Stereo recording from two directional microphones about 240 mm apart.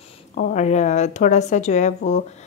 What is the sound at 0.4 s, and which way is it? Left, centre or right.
A woman's voice, left.